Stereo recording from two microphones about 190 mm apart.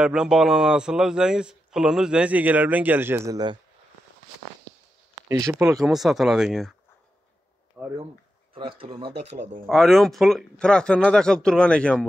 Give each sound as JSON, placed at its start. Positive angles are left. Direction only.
{"t": 0.0, "sound": "a man's voice", "side_deg": -5}
{"t": 5.3, "sound": "speech", "side_deg": -15}
{"t": 5.8, "sound": "a man's voice", "side_deg": 0}
{"t": 7.8, "sound": "speech", "side_deg": -15}
{"t": 8.5, "sound": "speech", "side_deg": -30}
{"t": 9.7, "sound": "a man's voice", "side_deg": 0}